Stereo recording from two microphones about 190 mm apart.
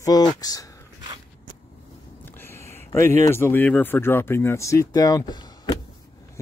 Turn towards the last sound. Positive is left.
turn(degrees=20)  # may be behind; listen again after turning